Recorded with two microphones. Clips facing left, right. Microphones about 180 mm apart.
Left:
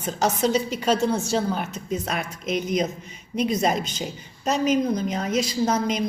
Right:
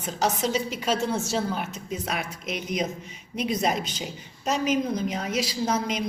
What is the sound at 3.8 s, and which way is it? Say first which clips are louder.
Speech: left 3 dB; 45° left (ahead or behind).